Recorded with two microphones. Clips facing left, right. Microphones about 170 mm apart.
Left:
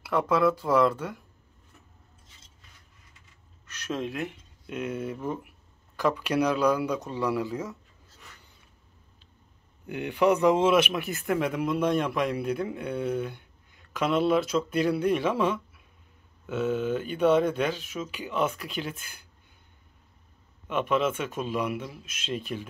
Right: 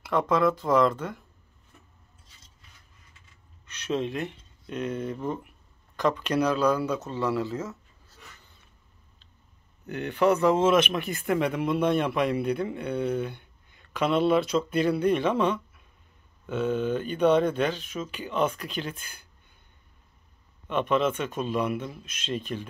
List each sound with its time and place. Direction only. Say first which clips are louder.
0.0 s speech: even; 10° left (ahead or behind)
4.0 s speech: right 1 dB; 5° left (ahead or behind)
9.8 s speech: even; 10° left (ahead or behind)
20.6 s speech: right 1 dB; 5° left (ahead or behind)